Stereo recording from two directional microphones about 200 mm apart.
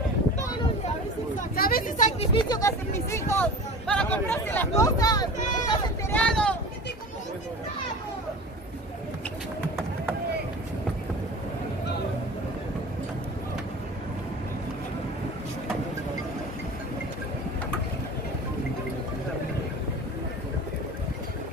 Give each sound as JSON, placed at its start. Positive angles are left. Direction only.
{"t": 1.5, "sound": "a sound", "side_deg": 45}
{"t": 2.3, "sound": "speech", "side_deg": 20}
{"t": 5.7, "sound": "vehicle", "side_deg": 10}